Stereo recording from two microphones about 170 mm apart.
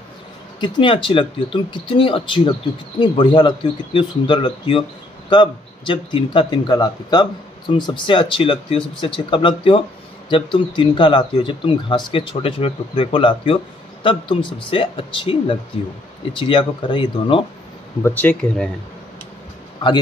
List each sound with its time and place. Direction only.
0.6 s speech: 30° left (ahead or behind)
18.0 s speech: 10° left (ahead or behind)